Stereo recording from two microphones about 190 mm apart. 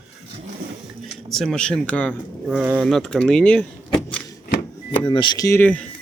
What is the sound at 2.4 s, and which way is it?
Speech, 5° right (ahead or behind).